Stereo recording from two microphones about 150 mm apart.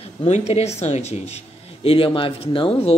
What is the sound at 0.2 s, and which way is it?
Speech, 45° left (ahead or behind).